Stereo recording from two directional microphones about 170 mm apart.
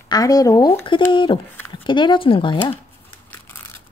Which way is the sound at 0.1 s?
20° left (ahead or behind).